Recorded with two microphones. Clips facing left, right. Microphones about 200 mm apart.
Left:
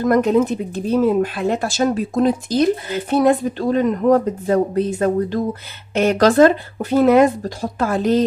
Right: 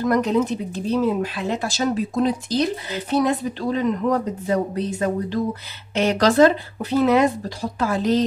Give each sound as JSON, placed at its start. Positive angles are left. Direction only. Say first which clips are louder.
{"t": 0.0, "sound": "speech", "louder": "left 4 dB", "side_deg": 50}